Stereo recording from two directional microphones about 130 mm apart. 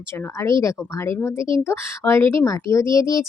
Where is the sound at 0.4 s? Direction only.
25° left (ahead or behind).